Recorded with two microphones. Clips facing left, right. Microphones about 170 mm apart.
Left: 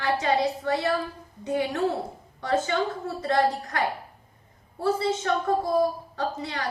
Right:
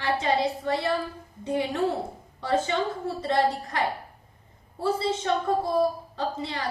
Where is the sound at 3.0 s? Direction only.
25° right (ahead or behind).